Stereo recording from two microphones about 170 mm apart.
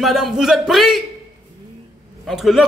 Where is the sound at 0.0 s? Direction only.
Centre (ahead or behind).